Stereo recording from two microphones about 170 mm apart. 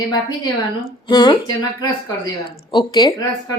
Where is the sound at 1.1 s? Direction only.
25° left (ahead or behind).